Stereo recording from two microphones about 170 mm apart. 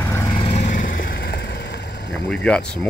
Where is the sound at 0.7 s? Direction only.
50° left (ahead or behind); by 2.1 s 80° left.